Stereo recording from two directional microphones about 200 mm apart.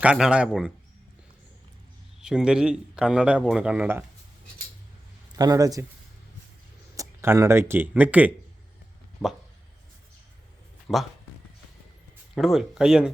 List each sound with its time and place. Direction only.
0.0 s a man's voice: 5° right (ahead or behind)
2.2 s a man's voice: 5° right (ahead or behind)
5.4 s speech: 15° right (ahead or behind)
6.9 s a man's voice: 15° right (ahead or behind)
10.9 s a man's voice: 5° left (ahead or behind)
12.3 s a man's voice: centre (ahead or behind)